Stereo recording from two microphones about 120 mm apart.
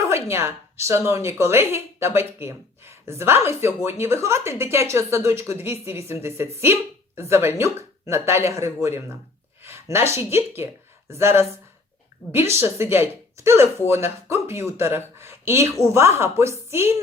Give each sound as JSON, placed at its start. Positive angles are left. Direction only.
{"t": 0.1, "sound": "speech", "side_deg": -20}
{"t": 15.2, "sound": "a sound", "side_deg": -20}
{"t": 15.8, "sound": "speech", "side_deg": -25}